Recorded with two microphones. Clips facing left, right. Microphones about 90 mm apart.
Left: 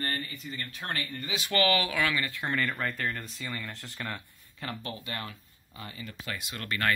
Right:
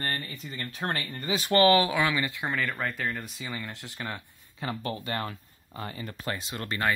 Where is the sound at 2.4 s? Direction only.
5° right (ahead or behind).